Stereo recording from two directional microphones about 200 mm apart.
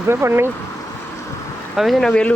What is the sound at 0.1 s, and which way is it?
Speech, 10° right (ahead or behind).